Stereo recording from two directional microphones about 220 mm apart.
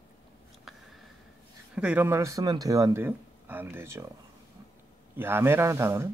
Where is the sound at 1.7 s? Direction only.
5° right (ahead or behind).